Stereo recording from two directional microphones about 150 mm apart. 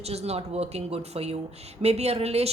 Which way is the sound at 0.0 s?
45° right (ahead or behind).